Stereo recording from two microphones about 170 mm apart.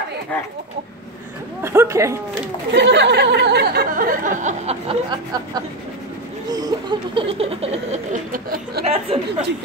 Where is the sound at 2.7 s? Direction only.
90° right; by 4.7 s 45° right (ahead or behind).